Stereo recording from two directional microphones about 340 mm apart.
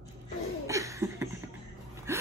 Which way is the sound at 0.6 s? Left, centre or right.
Centre.